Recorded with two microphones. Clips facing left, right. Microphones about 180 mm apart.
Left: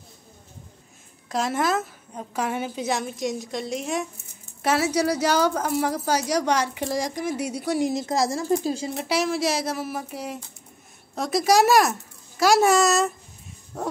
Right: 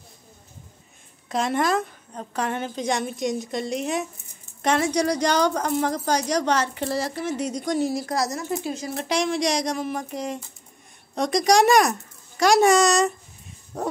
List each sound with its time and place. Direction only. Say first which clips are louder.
1.3 s a woman's voice: right 1 dB; centre (ahead or behind)
7.9 s a woman's voice: left 2 dB; 25° left (ahead or behind)
8.9 s a woman's voice: right 4 dB; 5° left (ahead or behind)